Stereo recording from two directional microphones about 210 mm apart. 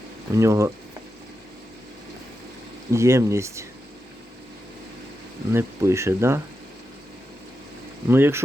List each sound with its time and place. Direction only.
0.3 s speech: 15° right (ahead or behind)
2.9 s speech: 15° right (ahead or behind)
5.5 s speech: 15° right (ahead or behind)
8.0 s speech: 10° right (ahead or behind)